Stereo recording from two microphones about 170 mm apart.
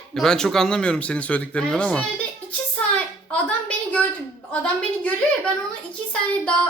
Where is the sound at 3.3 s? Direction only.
10° left (ahead or behind).